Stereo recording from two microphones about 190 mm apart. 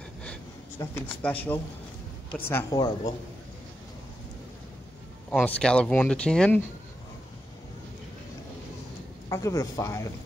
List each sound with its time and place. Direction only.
1.0 s speech: 5° left (ahead or behind)
5.3 s speech: 5° left (ahead or behind)
9.3 s speech: 15° left (ahead or behind)